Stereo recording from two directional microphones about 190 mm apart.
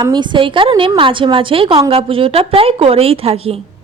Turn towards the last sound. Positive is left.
turn(degrees=-30)  # may be behind; listen again after turning